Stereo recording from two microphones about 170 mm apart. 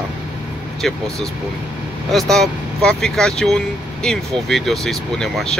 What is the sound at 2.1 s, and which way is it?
Speech, centre (ahead or behind).